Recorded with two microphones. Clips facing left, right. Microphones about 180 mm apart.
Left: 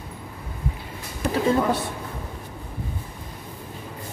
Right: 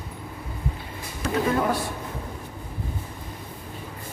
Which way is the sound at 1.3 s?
25° left (ahead or behind).